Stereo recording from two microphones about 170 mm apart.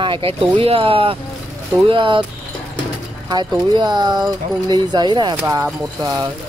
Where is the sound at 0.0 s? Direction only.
30° right (ahead or behind).